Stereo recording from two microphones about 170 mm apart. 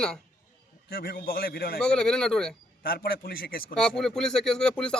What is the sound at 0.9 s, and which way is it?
Speech, 60° left (ahead or behind).